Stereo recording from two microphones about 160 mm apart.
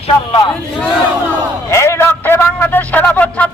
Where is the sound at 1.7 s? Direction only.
15° left (ahead or behind).